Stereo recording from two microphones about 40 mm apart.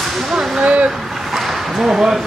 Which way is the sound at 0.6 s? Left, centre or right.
Right.